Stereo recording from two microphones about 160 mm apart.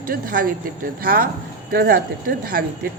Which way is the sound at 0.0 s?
60° right (ahead or behind).